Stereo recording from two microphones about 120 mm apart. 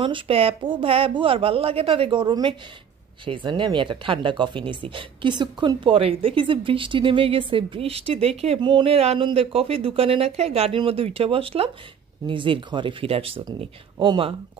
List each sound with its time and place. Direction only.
0.0 s a woman's voice: 50° right (ahead or behind)
8.5 s a woman's voice: 40° right (ahead or behind)